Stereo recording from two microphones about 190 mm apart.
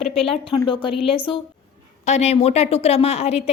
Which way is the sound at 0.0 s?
Centre (ahead or behind).